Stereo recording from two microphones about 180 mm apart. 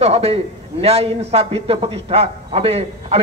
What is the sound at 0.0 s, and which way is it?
A man's voice, 35° right (ahead or behind).